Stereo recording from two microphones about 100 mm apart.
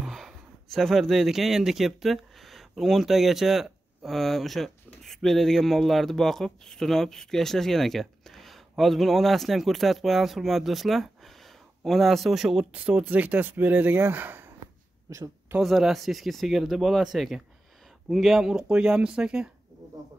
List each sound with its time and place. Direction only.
0.1 s speech: centre (ahead or behind)
12.7 s speech: 15° right (ahead or behind)
15.1 s speech: 35° right (ahead or behind)
15.6 s speech: centre (ahead or behind)